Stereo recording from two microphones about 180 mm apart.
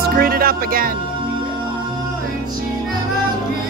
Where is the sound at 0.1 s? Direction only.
55° right (ahead or behind).